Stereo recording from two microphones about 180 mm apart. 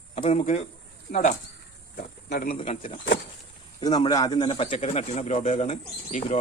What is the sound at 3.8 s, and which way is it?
A man's voice, 25° left (ahead or behind).